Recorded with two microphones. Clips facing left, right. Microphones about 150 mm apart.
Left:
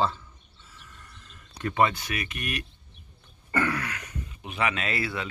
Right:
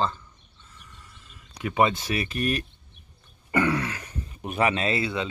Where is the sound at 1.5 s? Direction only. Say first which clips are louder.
Right 1 dB; 15° right (ahead or behind); by 2.6 s 35° right (ahead or behind).